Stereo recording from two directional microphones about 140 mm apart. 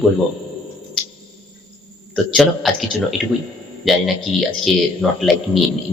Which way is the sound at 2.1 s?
Centre (ahead or behind).